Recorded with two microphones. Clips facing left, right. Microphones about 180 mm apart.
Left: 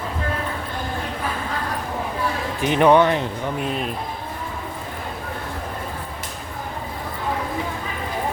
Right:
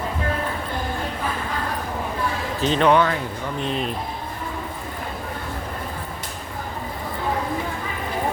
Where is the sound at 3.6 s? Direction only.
5° left (ahead or behind).